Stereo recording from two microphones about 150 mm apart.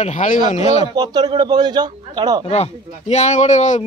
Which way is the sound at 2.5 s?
50° left (ahead or behind).